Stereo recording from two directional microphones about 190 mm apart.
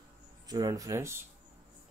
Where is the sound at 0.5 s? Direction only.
20° right (ahead or behind).